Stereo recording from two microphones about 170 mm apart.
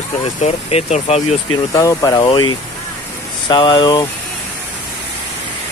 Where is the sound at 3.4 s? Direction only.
25° left (ahead or behind).